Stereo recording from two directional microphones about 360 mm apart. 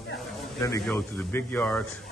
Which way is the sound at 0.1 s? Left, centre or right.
Centre.